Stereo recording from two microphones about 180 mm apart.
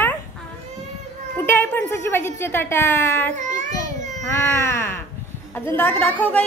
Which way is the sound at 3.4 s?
40° right (ahead or behind).